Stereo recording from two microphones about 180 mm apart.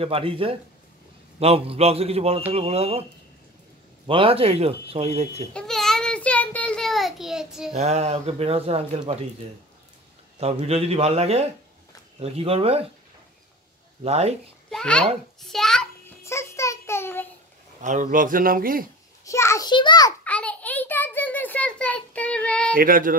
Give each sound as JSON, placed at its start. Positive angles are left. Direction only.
{"t": 0.0, "sound": "speech", "side_deg": -30}
{"t": 4.1, "sound": "speech", "side_deg": -30}
{"t": 5.5, "sound": "child singing", "side_deg": 5}
{"t": 7.7, "sound": "speech", "side_deg": -35}
{"t": 10.4, "sound": "speech", "side_deg": -35}
{"t": 14.0, "sound": "speech", "side_deg": -35}
{"t": 14.7, "sound": "a child's voice", "side_deg": 5}
{"t": 15.4, "sound": "a sound", "side_deg": 0}
{"t": 16.3, "sound": "child singing", "side_deg": 15}
{"t": 17.8, "sound": "speech", "side_deg": -45}
{"t": 19.2, "sound": "a child's voice", "side_deg": 15}
{"t": 20.2, "sound": "a sound", "side_deg": 5}
{"t": 22.8, "sound": "speech", "side_deg": -50}